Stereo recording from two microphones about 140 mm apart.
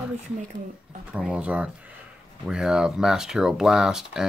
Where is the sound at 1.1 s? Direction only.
10° right (ahead or behind).